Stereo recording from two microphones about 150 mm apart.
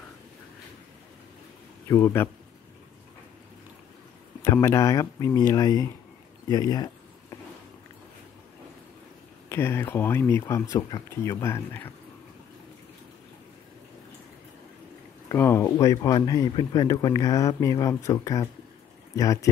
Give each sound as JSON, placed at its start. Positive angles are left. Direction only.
{"t": 1.9, "sound": "speech", "side_deg": 15}
{"t": 4.4, "sound": "speech", "side_deg": 15}
{"t": 9.5, "sound": "speech", "side_deg": 15}
{"t": 15.2, "sound": "speech", "side_deg": 15}